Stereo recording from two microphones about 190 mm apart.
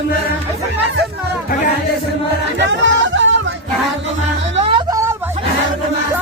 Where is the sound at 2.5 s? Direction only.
70° right (ahead or behind).